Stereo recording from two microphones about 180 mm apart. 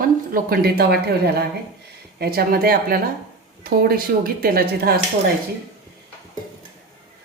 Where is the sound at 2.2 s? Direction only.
60° right (ahead or behind).